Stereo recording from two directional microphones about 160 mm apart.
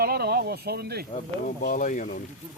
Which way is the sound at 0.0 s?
75° right (ahead or behind).